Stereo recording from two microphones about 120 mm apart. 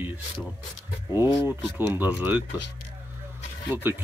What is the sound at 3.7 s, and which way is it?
Speech, 15° right (ahead or behind).